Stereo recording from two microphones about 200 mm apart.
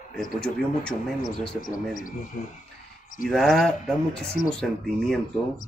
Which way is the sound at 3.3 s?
Centre (ahead or behind).